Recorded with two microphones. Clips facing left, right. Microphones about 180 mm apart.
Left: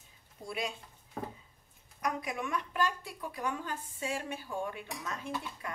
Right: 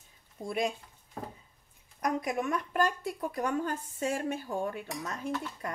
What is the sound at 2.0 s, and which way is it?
A woman's voice, 45° right (ahead or behind).